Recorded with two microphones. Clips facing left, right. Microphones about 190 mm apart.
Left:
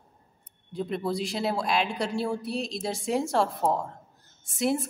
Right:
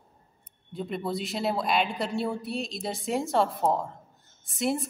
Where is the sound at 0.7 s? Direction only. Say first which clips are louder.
Left 2 dB; centre (ahead or behind).